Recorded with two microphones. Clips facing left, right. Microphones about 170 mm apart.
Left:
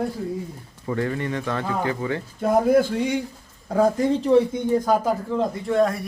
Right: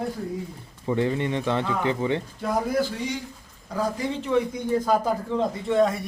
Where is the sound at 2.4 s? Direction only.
55° left (ahead or behind); by 4.6 s 35° left (ahead or behind).